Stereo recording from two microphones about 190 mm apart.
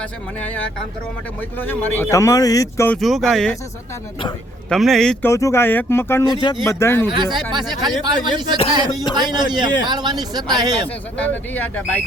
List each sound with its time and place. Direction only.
0.0 s speech: 10° left (ahead or behind)
3.0 s speech: centre (ahead or behind)
4.7 s speech: centre (ahead or behind)
5.3 s speech: 15° left (ahead or behind)
7.2 s speech: 25° right (ahead or behind)
10.8 s speech: 10° left (ahead or behind)